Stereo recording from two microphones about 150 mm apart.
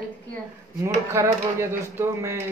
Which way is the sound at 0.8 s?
20° right (ahead or behind).